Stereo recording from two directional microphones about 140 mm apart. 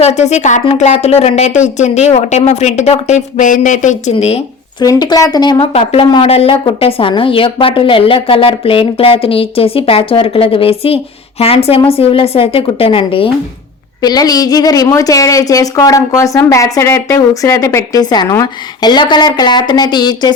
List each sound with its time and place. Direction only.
0.0 s speech: 55° left (ahead or behind)
4.8 s a woman's voice: 25° left (ahead or behind)
5.7 s a woman's voice: 45° left (ahead or behind)
14.0 s a woman's voice: 25° left (ahead or behind)